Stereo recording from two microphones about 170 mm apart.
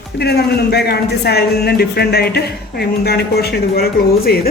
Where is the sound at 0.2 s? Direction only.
75° left (ahead or behind).